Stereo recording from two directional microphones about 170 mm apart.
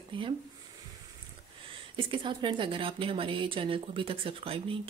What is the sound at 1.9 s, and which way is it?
Speech, 30° right (ahead or behind).